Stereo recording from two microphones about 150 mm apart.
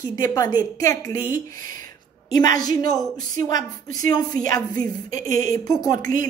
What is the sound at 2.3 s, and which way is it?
A woman's voice, 25° left (ahead or behind).